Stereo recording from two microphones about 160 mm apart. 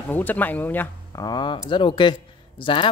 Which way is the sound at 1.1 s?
25° left (ahead or behind).